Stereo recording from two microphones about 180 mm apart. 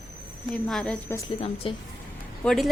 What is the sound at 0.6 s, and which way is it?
Speech, 5° left (ahead or behind).